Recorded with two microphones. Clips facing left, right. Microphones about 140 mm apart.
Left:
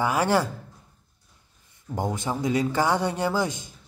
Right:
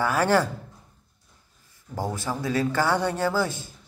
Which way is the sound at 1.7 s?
20° left (ahead or behind).